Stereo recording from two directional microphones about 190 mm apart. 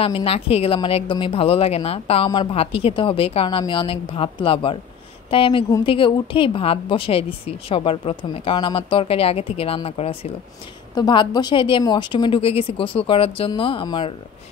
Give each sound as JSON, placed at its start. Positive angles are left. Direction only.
{"t": 0.0, "sound": "speech", "side_deg": 30}